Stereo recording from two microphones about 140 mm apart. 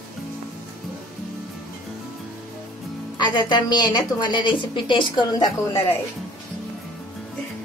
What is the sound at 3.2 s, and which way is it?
A woman's voice, 30° left (ahead or behind).